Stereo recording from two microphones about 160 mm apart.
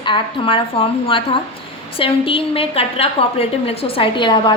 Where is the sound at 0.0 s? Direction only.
30° left (ahead or behind).